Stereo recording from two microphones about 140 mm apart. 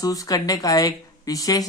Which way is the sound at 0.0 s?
25° left (ahead or behind).